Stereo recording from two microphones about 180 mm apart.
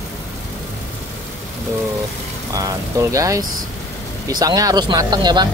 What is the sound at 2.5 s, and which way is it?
Speech, 20° right (ahead or behind).